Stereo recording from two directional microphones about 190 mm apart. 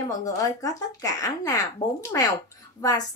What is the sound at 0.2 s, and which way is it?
A woman's voice, 20° left (ahead or behind).